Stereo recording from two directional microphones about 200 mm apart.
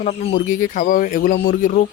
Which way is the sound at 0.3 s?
40° left (ahead or behind).